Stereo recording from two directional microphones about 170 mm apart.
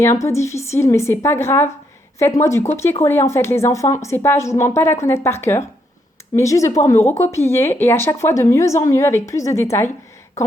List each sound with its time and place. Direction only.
0.0 s speech: 15° left (ahead or behind)